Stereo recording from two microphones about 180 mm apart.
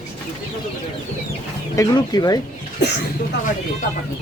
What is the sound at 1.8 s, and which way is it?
Speech, 20° left (ahead or behind).